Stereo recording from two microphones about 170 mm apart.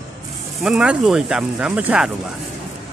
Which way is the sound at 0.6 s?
5° right (ahead or behind).